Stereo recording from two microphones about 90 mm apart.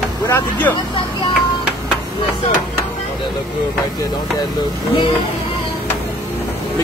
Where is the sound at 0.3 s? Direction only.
20° left (ahead or behind).